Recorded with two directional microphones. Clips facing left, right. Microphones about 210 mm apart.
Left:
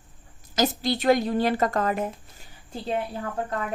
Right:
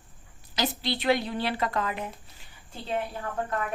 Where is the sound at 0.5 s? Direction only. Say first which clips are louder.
Left 5 dB; 45° left (ahead or behind).